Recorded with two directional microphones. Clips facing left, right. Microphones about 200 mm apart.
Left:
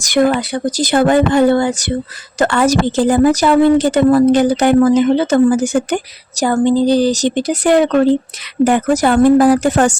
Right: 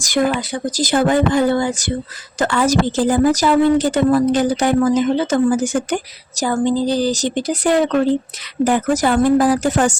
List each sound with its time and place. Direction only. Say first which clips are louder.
0.0 s a woman's voice: left 4 dB; 65° left (ahead or behind)